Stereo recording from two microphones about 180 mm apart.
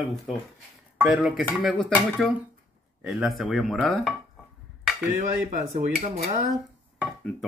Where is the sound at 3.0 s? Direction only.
5° right (ahead or behind).